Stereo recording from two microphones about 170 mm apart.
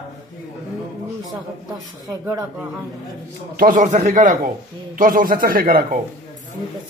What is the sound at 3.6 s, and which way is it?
A man's voice, 50° right (ahead or behind).